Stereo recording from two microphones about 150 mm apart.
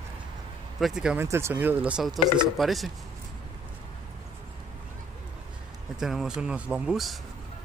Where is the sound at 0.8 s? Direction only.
5° right (ahead or behind).